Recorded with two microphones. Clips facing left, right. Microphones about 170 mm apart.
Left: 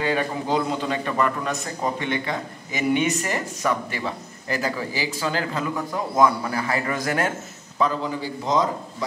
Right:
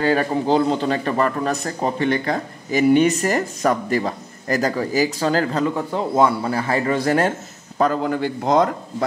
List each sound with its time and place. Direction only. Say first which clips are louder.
0.0 s a man's voice: right 5 dB; 45° right (ahead or behind)
7.8 s a man's voice: right 5 dB; 55° right (ahead or behind)